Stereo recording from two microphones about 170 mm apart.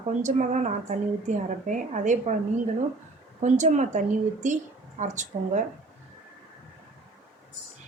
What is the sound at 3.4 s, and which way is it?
A woman's voice, 45° right (ahead or behind).